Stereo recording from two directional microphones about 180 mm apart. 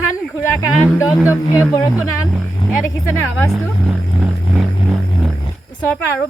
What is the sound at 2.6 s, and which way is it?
Speech, 15° left (ahead or behind).